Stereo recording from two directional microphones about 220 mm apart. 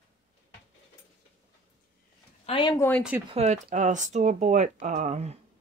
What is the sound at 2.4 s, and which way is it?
Speech, 20° left (ahead or behind).